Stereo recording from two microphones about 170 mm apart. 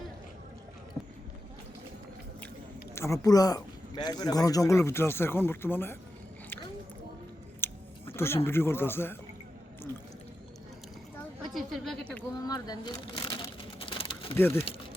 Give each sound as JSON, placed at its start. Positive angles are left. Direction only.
{"t": 2.9, "sound": "speech", "side_deg": 15}
{"t": 7.6, "sound": "a sound", "side_deg": 15}
{"t": 8.4, "sound": "speech", "side_deg": 15}
{"t": 11.4, "sound": "speech", "side_deg": 0}
{"t": 12.5, "sound": "a sound", "side_deg": 25}
{"t": 14.3, "sound": "speech", "side_deg": 15}